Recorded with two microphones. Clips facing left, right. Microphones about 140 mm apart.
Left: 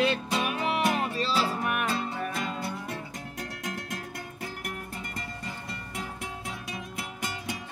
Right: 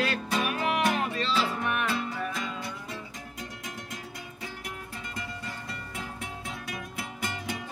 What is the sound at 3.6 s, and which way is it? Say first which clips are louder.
Music: left 4 dB; 65° left (ahead or behind).